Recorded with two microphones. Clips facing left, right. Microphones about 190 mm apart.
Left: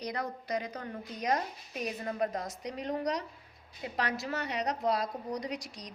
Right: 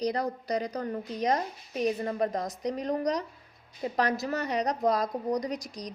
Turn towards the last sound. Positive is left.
turn(degrees=-40)  # may be behind; listen again after turning